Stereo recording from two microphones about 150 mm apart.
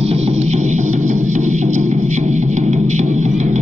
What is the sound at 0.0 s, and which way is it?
Music, 45° right (ahead or behind).